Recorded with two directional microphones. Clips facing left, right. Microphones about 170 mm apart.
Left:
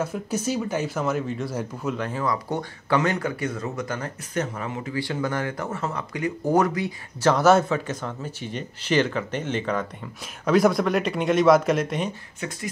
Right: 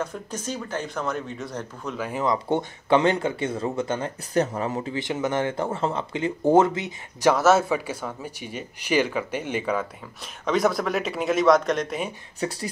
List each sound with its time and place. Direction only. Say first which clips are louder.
0.0 s speech: left 4 dB; 10° left (ahead or behind)
2.0 s speech: even; 10° right (ahead or behind)
2.2 s speech: right 6 dB; 25° right (ahead or behind)
4.3 s speech: right 5 dB; 35° right (ahead or behind)
4.9 s speech: left 1 dB; 20° right (ahead or behind)
7.3 s speech: left 4 dB; 5° right (ahead or behind)
10.4 s speech: left 3 dB; centre (ahead or behind)
12.4 s speech: right 10 dB; 35° right (ahead or behind)